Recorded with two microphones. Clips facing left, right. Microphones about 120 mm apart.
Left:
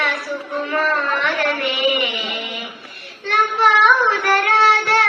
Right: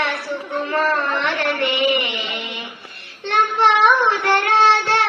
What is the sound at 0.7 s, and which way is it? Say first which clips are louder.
Speech: even; 25° right (ahead or behind).